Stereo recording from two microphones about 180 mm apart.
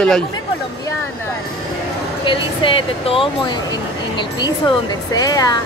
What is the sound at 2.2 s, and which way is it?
Speech, 30° left (ahead or behind).